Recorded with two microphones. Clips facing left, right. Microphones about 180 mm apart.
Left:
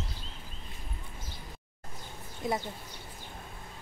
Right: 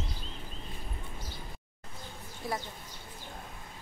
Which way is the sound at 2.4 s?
20° left (ahead or behind).